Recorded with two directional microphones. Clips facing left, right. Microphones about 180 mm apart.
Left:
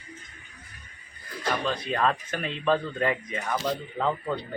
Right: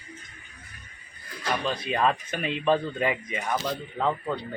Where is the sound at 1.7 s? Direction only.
10° right (ahead or behind).